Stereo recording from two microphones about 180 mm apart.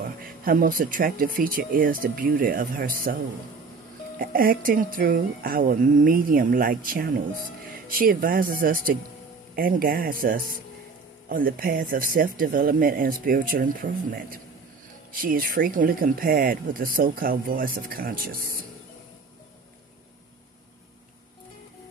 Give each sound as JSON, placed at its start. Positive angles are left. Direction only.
{"t": 0.0, "sound": "speech", "side_deg": -55}
{"t": 4.2, "sound": "speech", "side_deg": -50}